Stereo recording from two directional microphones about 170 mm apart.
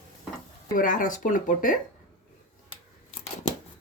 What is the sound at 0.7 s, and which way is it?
Speech, 50° left (ahead or behind).